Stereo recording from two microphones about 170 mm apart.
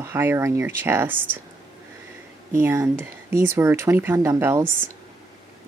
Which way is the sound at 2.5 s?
15° right (ahead or behind).